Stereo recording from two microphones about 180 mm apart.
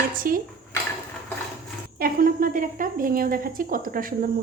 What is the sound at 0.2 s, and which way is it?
Dishes, 50° right (ahead or behind).